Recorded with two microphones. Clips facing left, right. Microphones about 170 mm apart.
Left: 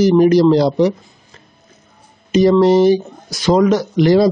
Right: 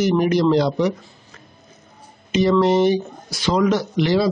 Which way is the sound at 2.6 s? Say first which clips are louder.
Left 5 dB; 35° left (ahead or behind).